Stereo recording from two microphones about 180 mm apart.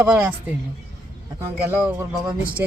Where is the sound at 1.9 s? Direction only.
20° right (ahead or behind).